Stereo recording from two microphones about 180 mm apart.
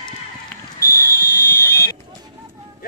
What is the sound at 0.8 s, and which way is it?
Fire alarm, 55° left (ahead or behind).